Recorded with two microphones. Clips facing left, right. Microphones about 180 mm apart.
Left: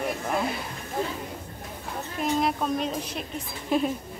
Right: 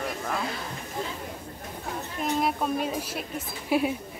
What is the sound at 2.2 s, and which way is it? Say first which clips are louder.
Speech: left 1 dB; centre (ahead or behind).